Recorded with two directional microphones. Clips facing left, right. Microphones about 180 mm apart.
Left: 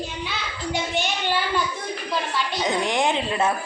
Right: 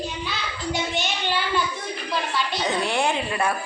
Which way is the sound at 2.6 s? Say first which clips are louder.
Left 2 dB; 15° left (ahead or behind).